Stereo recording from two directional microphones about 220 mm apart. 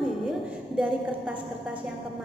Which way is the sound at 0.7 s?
5° right (ahead or behind).